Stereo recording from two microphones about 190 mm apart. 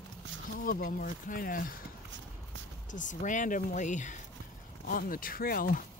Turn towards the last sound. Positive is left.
turn(degrees=50)  # may be behind; listen again after turning